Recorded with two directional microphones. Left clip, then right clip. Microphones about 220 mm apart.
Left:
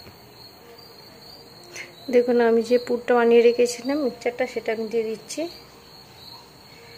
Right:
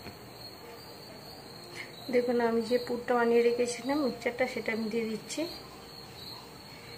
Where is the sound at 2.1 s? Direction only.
45° left (ahead or behind).